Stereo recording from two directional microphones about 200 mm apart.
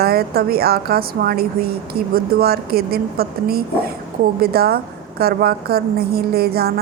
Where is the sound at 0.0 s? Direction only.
50° right (ahead or behind).